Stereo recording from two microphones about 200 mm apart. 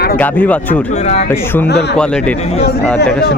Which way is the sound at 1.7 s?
55° left (ahead or behind).